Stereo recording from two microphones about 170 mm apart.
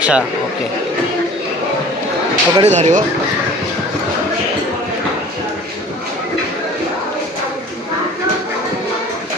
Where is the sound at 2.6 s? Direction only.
45° right (ahead or behind).